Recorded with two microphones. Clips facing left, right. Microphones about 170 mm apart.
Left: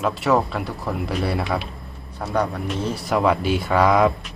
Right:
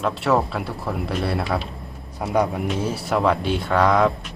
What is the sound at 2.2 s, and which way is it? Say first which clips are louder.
A man's voice: right 2 dB; 15° right (ahead or behind).